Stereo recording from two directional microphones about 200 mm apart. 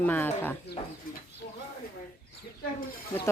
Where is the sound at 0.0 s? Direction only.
10° left (ahead or behind).